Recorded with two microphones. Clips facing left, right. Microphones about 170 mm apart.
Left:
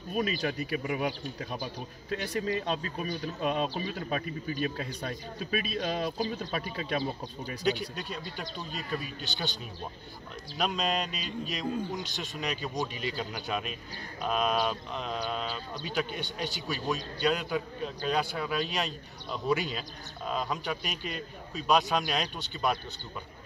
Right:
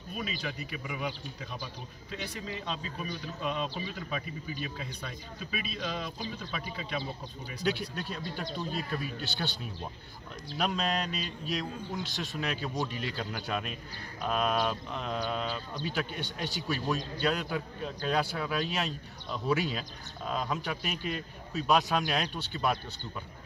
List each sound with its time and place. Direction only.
0.1 s a man's voice: 40° left (ahead or behind)
7.8 s a man's voice: centre (ahead or behind)
10.5 s a man's voice: centre (ahead or behind)